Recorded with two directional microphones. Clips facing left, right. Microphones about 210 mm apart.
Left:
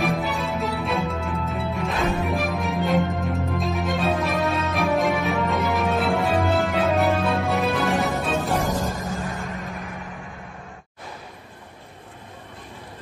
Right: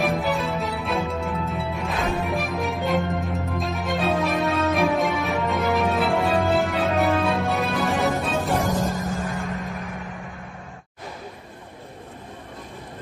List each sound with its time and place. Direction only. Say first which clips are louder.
0.0 s music: right 1 dB; centre (ahead or behind)
9.5 s vehicle: right 2 dB; centre (ahead or behind)